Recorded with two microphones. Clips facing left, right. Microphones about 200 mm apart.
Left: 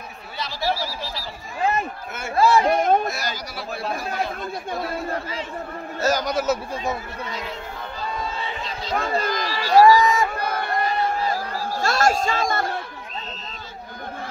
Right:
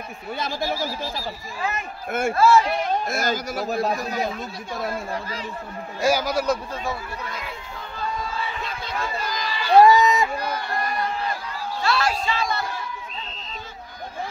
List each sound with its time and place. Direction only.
0.4 s speech: 50° right (ahead or behind)
1.6 s speech: 30° left (ahead or behind)
2.3 s a man's voice: 15° left (ahead or behind)
2.6 s a man's voice: 50° left (ahead or behind)
3.1 s speech: 50° right (ahead or behind)
5.9 s a man's voice: 10° right (ahead or behind)
8.9 s speech: 55° left (ahead or behind)
9.8 s crowd: 20° right (ahead or behind)
10.3 s crowd: 60° left (ahead or behind)
11.3 s a sound: 55° left (ahead or behind)